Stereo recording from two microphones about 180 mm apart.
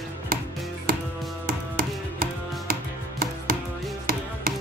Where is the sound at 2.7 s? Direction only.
55° right (ahead or behind).